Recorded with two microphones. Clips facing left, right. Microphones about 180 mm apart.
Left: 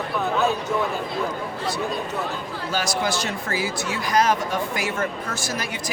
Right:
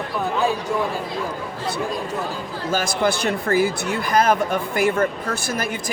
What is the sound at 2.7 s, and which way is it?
Speech, 55° right (ahead or behind).